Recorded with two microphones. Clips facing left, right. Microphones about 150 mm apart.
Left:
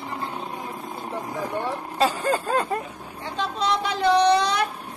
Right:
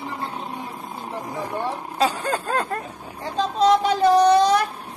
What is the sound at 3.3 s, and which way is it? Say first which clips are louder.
Speech: right 7 dB; 45° right (ahead or behind).